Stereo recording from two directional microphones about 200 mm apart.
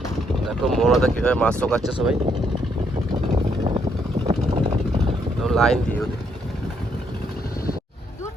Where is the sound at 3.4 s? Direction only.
30° right (ahead or behind).